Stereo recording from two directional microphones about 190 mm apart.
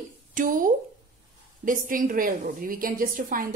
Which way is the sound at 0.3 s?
45° right (ahead or behind).